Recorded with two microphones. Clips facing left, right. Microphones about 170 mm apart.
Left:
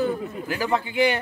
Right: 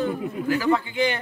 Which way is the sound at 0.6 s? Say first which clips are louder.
Left 3 dB; 15° left (ahead or behind).